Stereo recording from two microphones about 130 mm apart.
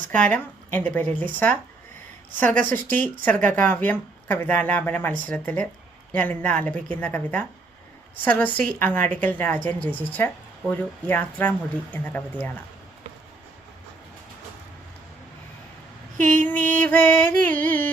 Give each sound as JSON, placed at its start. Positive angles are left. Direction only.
{"t": 0.1, "sound": "a woman's voice", "side_deg": 10}
{"t": 2.6, "sound": "a woman's voice", "side_deg": 15}
{"t": 16.2, "sound": "a sound", "side_deg": -85}
{"t": 16.6, "sound": "music", "side_deg": -90}
{"t": 16.8, "sound": "a woman's voice", "side_deg": 15}